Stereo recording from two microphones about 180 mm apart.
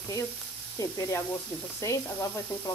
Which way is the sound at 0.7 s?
20° left (ahead or behind).